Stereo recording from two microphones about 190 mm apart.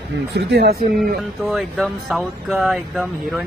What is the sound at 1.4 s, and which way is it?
Speech, centre (ahead or behind).